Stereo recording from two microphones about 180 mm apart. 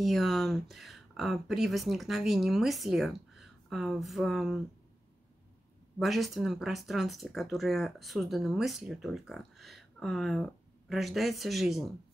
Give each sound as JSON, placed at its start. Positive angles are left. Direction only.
{"t": 0.0, "sound": "speech", "side_deg": 0}
{"t": 5.9, "sound": "speech", "side_deg": 0}